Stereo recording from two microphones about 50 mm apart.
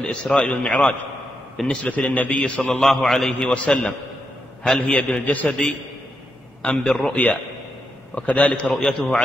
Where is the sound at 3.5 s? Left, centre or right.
Left.